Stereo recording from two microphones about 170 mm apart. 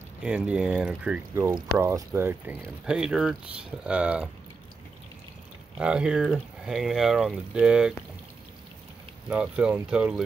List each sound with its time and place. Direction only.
0.2 s speech: 5° right (ahead or behind)
5.8 s speech: 5° right (ahead or behind)
9.3 s speech: 10° right (ahead or behind)